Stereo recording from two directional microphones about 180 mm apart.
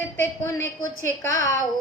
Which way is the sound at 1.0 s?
15° left (ahead or behind).